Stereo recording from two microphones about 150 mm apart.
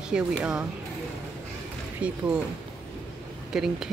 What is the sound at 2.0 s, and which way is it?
Speech, 10° right (ahead or behind).